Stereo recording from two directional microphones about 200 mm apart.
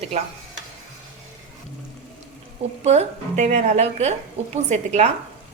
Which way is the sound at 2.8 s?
35° right (ahead or behind).